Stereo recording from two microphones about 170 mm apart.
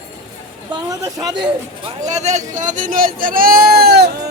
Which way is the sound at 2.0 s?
40° right (ahead or behind).